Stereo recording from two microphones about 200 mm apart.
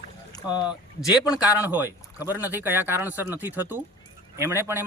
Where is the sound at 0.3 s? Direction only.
20° left (ahead or behind).